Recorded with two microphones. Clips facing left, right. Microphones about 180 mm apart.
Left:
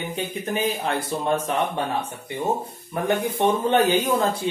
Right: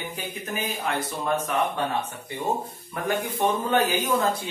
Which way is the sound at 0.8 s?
30° left (ahead or behind).